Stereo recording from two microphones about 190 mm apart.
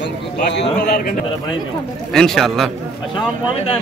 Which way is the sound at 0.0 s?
65° left (ahead or behind).